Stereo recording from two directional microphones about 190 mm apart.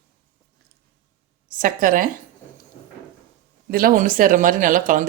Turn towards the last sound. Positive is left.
turn(degrees=-45)  # may be behind; listen again after turning